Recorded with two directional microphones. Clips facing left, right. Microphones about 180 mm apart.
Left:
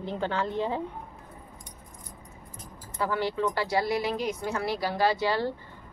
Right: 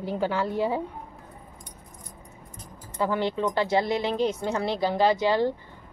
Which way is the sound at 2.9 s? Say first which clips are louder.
Right 2 dB; 20° right (ahead or behind).